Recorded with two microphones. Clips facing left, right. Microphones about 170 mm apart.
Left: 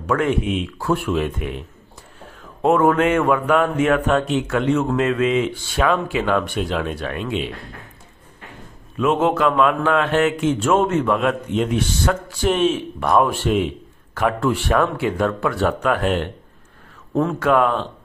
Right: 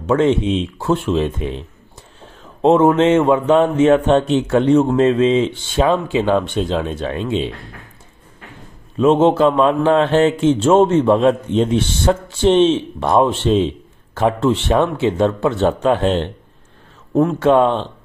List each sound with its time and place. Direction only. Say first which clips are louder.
0.0 s a man's voice: right 5 dB; 25° right (ahead or behind)
8.9 s a man's voice: right 6 dB; 30° right (ahead or behind)
17.1 s speech: right 5 dB; 15° right (ahead or behind)
17.4 s a man's voice: right 3 dB; 25° right (ahead or behind)